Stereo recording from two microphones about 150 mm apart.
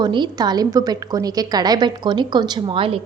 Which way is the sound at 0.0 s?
30° right (ahead or behind).